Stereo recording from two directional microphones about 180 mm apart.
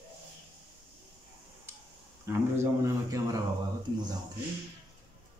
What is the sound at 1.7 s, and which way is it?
Tick-tock, 15° right (ahead or behind).